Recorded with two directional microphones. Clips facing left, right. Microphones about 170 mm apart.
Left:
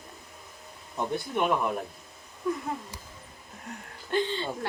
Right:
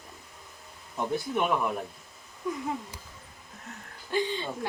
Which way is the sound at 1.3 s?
Centre (ahead or behind).